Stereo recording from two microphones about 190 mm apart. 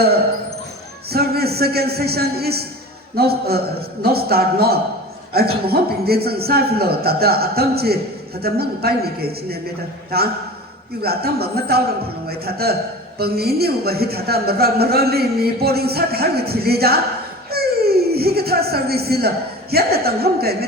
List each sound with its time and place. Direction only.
1.1 s a woman's voice: 55° right (ahead or behind)
11.0 s a woman's voice: 55° right (ahead or behind)
17.5 s a sound: 55° right (ahead or behind)
19.7 s a woman's voice: 55° right (ahead or behind)